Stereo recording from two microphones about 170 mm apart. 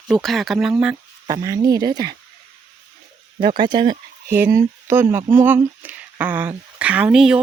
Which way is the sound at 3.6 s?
25° right (ahead or behind).